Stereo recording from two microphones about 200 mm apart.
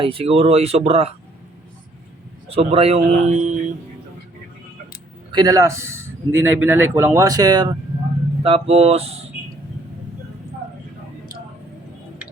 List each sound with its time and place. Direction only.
0.0 s speech: 25° right (ahead or behind)
2.5 s speech: 30° right (ahead or behind)
5.3 s a man's voice: 20° right (ahead or behind)
8.4 s speech: 30° right (ahead or behind)